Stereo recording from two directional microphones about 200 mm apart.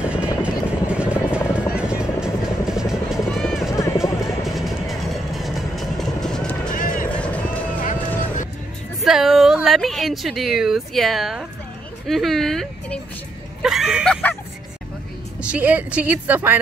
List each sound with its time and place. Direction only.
0.0 s helicopter: 5° right (ahead or behind)
4.5 s music: centre (ahead or behind)
6.7 s vehicle: 45° left (ahead or behind)
7.2 s run: 5° left (ahead or behind)
7.8 s a sound: 40° left (ahead or behind)
9.0 s a sound: centre (ahead or behind)
12.1 s speech: centre (ahead or behind)
13.6 s a sound: centre (ahead or behind)
15.4 s speech: 5° right (ahead or behind)